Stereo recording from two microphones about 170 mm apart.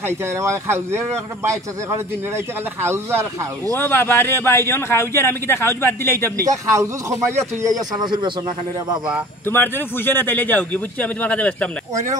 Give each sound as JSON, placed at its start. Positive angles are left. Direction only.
{"t": 0.0, "sound": "speech", "side_deg": -15}
{"t": 3.7, "sound": "a man's voice", "side_deg": 15}
{"t": 6.4, "sound": "a man's voice", "side_deg": -20}
{"t": 9.5, "sound": "a man's voice", "side_deg": 10}
{"t": 11.9, "sound": "speech", "side_deg": -45}